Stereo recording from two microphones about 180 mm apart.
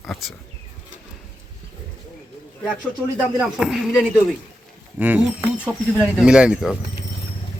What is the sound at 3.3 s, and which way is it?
Speech, 5° right (ahead or behind).